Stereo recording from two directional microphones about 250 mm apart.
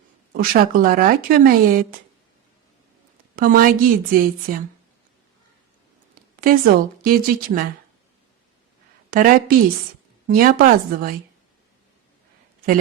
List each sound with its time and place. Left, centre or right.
0.3 s speech: right
3.3 s speech: right
6.3 s speech: right
9.0 s a sound: right
10.2 s speech: right